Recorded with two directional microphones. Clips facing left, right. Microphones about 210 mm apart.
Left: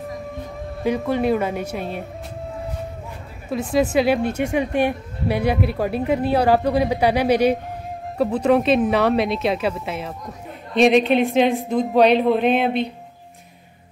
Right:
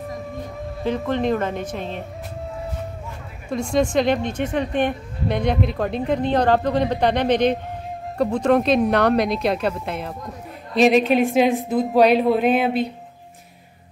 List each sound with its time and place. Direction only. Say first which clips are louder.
0.8 s speech: left 2 dB; 10° left (ahead or behind)
3.4 s a woman's voice: left 1 dB; 5° left (ahead or behind)